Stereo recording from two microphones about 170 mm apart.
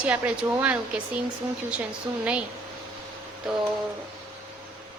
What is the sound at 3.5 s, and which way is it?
Speech, 5° right (ahead or behind).